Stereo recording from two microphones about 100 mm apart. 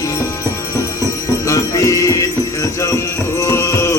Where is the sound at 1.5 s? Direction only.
30° left (ahead or behind).